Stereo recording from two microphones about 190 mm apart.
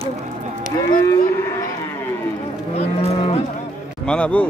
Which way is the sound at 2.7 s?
35° left (ahead or behind).